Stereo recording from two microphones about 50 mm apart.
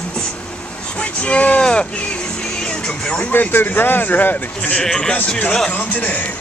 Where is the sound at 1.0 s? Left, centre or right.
Left.